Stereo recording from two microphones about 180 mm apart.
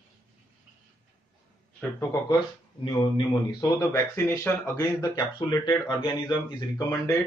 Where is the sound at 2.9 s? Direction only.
20° left (ahead or behind).